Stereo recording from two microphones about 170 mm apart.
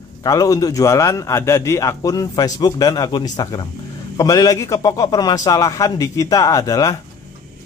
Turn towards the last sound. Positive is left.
turn(degrees=20)  # may be behind; listen again after turning